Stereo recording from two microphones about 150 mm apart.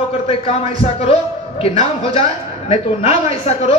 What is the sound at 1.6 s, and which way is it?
Speech, 40° left (ahead or behind).